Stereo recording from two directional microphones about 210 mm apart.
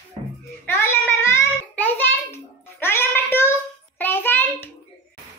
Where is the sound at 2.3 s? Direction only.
10° left (ahead or behind).